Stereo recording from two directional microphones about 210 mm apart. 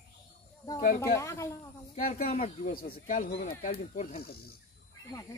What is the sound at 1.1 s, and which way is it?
Speech, 15° left (ahead or behind).